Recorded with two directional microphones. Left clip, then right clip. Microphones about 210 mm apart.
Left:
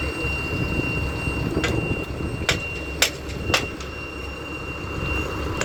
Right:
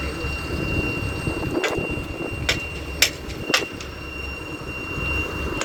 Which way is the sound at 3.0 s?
50° left (ahead or behind).